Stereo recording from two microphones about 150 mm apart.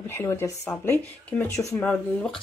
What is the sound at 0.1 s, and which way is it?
Speech, 15° left (ahead or behind).